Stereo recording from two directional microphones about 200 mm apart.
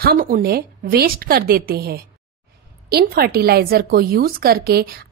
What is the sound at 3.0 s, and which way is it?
A woman's voice, 50° right (ahead or behind).